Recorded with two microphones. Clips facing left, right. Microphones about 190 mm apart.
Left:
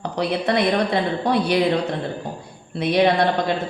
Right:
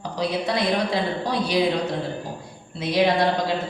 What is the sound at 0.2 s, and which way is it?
A woman's voice, 60° left (ahead or behind).